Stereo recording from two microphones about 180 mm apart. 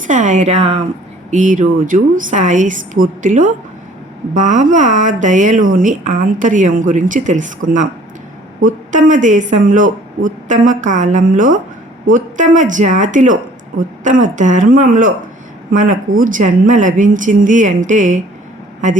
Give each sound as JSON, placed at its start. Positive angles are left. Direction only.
{"t": 0.1, "sound": "speech", "side_deg": -45}